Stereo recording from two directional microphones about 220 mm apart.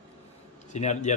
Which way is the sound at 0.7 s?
30° left (ahead or behind).